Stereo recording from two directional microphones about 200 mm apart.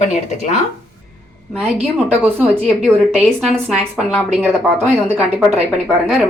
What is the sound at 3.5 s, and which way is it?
Speech, centre (ahead or behind).